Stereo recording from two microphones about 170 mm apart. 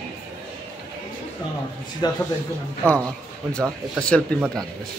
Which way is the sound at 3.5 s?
5° left (ahead or behind).